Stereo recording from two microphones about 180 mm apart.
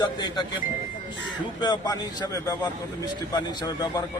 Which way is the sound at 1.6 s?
20° left (ahead or behind).